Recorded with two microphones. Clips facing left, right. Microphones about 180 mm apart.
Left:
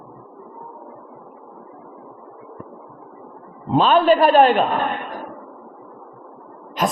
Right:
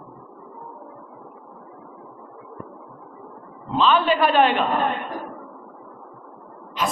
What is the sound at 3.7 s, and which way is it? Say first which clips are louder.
Speech: left 5 dB; 45° left (ahead or behind).